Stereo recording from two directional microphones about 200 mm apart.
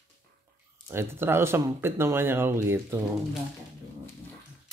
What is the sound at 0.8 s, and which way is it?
Speech, 10° right (ahead or behind).